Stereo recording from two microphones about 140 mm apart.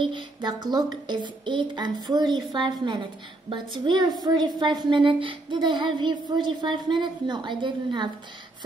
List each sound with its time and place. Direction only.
0.0 s speech: 35° right (ahead or behind)